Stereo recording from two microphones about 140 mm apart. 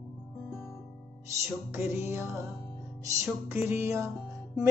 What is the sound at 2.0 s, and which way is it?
Music, 20° right (ahead or behind).